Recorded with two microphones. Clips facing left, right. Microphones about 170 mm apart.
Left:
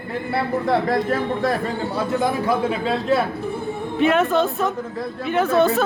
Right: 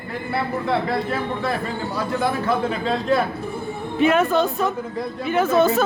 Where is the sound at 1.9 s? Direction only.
20° left (ahead or behind).